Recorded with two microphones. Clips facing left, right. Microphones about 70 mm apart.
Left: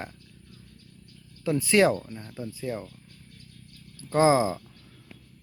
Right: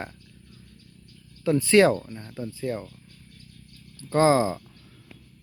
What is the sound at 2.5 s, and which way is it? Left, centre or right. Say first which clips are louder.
Speech: right 3 dB; centre.